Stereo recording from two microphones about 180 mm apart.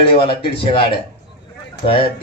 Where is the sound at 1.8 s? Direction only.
30° left (ahead or behind).